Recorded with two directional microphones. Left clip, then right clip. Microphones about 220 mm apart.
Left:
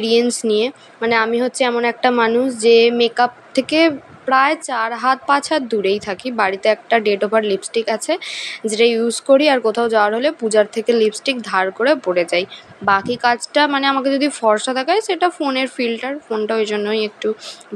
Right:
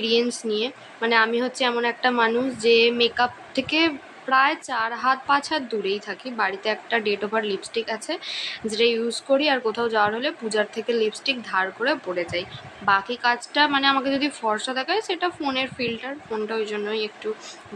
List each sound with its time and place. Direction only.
0.0 s a woman's voice: 30° left (ahead or behind)